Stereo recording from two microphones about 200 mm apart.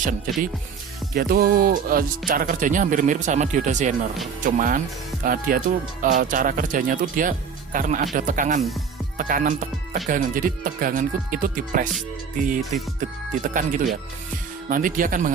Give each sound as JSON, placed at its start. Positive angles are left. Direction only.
{"t": 1.1, "sound": "speech", "side_deg": -50}
{"t": 13.0, "sound": "speech", "side_deg": -40}